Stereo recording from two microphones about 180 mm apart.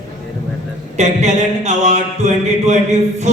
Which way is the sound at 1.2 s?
40° right (ahead or behind).